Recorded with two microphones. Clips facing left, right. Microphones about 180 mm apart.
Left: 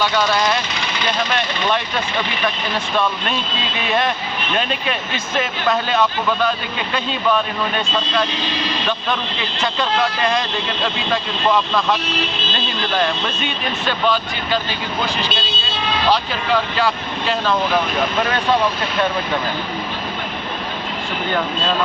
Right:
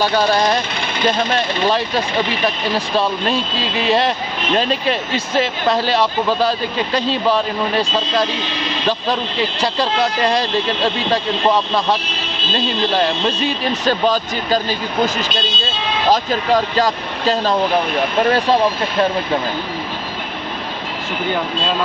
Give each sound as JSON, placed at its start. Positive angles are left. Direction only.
{"t": 0.0, "sound": "speech", "side_deg": -35}
{"t": 9.6, "sound": "speech", "side_deg": -35}
{"t": 11.4, "sound": "speech", "side_deg": -30}
{"t": 13.8, "sound": "speech", "side_deg": -40}